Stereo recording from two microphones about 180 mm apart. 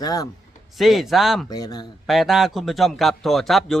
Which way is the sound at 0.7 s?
Centre (ahead or behind).